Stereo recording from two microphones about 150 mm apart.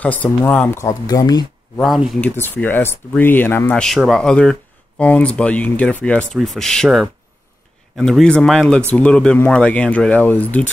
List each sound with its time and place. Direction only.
0.0 s speech: 10° left (ahead or behind); by 1.4 s 25° left (ahead or behind)
1.8 s speech: centre (ahead or behind)